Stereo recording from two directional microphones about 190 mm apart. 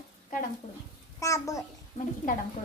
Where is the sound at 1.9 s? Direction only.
45° left (ahead or behind).